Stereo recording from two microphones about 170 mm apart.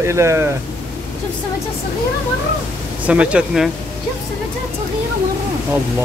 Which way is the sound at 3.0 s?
5° right (ahead or behind).